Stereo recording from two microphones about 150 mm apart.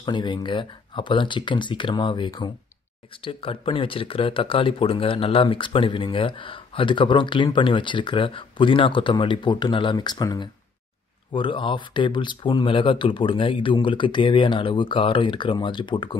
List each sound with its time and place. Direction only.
0.0 s speech: 30° left (ahead or behind)